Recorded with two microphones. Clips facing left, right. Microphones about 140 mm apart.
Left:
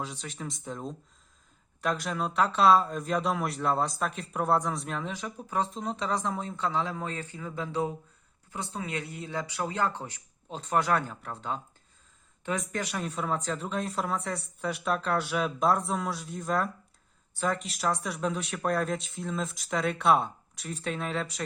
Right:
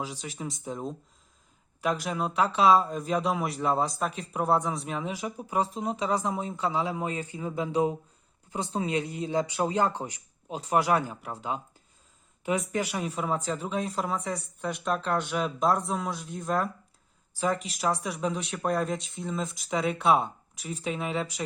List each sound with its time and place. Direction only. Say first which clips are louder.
0.0 s speech: right 2 dB; 5° right (ahead or behind)